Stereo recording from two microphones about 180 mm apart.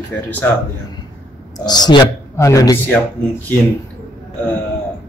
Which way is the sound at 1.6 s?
25° left (ahead or behind).